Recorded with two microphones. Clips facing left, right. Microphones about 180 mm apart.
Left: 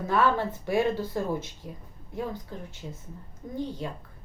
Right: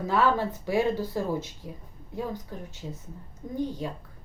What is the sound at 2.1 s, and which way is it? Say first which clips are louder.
Speech: even; 15° right (ahead or behind).